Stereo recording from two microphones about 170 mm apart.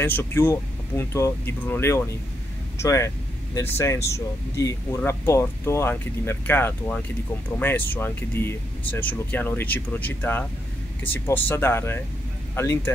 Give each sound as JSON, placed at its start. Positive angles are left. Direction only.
{"t": 0.0, "sound": "speech", "side_deg": 10}